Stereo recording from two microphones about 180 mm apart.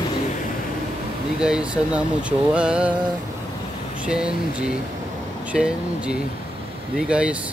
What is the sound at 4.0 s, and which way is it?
Speech, 5° right (ahead or behind).